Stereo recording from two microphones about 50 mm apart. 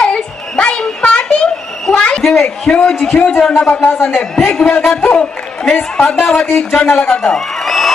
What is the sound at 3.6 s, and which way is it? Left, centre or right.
Speech, left.